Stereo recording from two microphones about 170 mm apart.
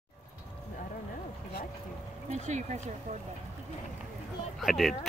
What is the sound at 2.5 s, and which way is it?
Speech, 45° right (ahead or behind).